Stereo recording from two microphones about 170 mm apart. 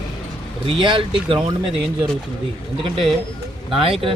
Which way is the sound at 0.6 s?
30° right (ahead or behind).